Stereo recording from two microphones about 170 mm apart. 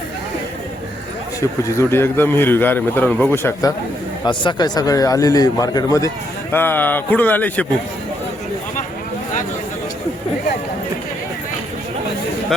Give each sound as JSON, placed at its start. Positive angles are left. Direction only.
{"t": 1.4, "sound": "speech", "side_deg": 15}
{"t": 4.3, "sound": "a man's voice", "side_deg": 25}